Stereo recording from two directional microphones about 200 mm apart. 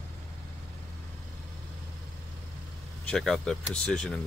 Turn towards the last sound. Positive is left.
turn(degrees=5)  # may be behind; listen again after turning